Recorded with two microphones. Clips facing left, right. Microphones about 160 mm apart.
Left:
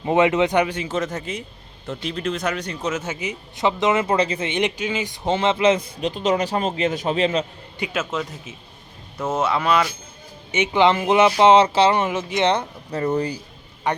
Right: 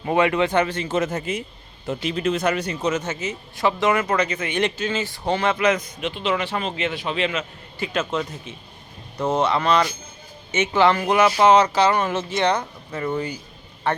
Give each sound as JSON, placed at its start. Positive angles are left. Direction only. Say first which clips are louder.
{"t": 0.0, "sound": "speech", "louder": "left 2 dB", "side_deg": 20}
{"t": 0.9, "sound": "speech", "louder": "right 2 dB", "side_deg": -5}
{"t": 7.9, "sound": "speech", "louder": "right 2 dB", "side_deg": 0}
{"t": 12.0, "sound": "speech", "louder": "left 1 dB", "side_deg": 15}
{"t": 12.9, "sound": "speech", "louder": "left 4 dB", "side_deg": 40}
{"t": 13.9, "sound": "a man's voice", "louder": "even", "side_deg": 15}